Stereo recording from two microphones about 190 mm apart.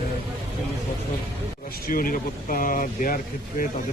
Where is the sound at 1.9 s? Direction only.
50° left (ahead or behind).